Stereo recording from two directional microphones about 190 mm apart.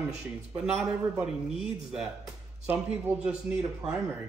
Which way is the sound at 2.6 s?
10° right (ahead or behind).